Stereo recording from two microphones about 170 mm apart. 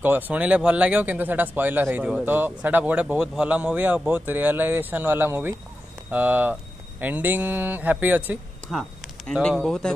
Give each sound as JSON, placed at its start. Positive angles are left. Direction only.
{"t": 0.0, "sound": "speech", "side_deg": -10}
{"t": 9.3, "sound": "speech", "side_deg": 5}